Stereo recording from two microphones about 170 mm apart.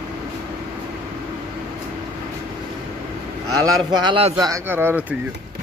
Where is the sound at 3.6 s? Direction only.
25° right (ahead or behind).